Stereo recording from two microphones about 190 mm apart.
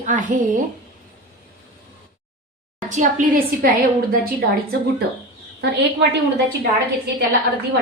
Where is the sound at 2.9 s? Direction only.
40° right (ahead or behind).